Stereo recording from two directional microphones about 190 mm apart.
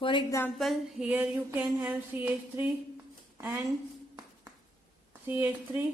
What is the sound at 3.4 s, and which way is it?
Speech, 10° right (ahead or behind).